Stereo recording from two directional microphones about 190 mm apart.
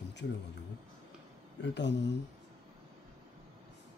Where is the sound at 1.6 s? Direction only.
65° left (ahead or behind).